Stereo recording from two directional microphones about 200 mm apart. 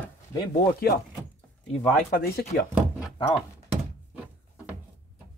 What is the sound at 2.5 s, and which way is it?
Speech, 50° left (ahead or behind).